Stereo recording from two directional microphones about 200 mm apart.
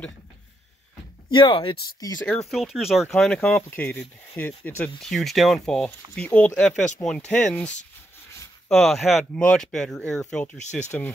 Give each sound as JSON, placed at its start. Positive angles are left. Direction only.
{"t": 1.3, "sound": "speech", "side_deg": 25}
{"t": 2.2, "sound": "speech", "side_deg": 0}
{"t": 10.6, "sound": "speech", "side_deg": 35}